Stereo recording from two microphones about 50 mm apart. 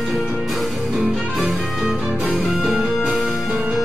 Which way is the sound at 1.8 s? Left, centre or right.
Right.